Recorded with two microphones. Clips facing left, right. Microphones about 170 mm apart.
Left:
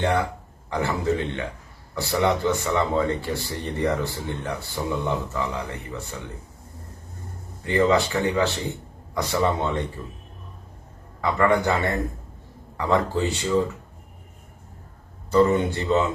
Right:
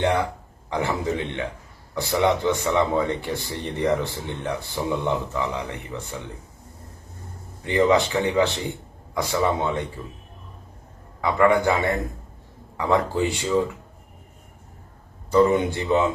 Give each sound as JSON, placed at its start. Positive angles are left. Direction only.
{"t": 0.0, "sound": "speech", "side_deg": -15}
{"t": 7.6, "sound": "speech", "side_deg": -15}
{"t": 11.2, "sound": "speech", "side_deg": -15}
{"t": 15.3, "sound": "speech", "side_deg": -15}